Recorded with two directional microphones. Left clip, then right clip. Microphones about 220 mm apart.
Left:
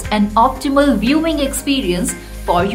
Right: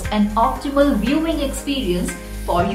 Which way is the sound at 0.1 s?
45° left (ahead or behind).